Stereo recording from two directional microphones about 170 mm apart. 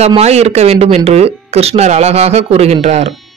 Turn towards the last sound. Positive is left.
turn(degrees=-40)  # may be behind; listen again after turning